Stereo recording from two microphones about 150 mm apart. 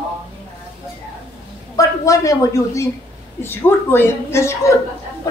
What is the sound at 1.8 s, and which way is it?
A woman's voice, 20° left (ahead or behind).